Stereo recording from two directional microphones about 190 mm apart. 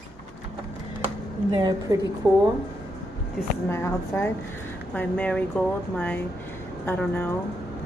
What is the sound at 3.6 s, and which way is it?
Speech, 15° left (ahead or behind).